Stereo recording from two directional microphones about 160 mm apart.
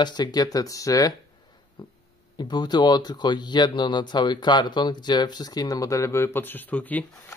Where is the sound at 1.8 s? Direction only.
30° left (ahead or behind).